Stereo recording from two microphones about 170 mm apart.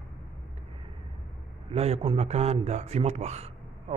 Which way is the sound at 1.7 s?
35° right (ahead or behind).